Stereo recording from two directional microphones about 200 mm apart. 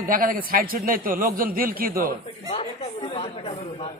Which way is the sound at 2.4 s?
30° left (ahead or behind).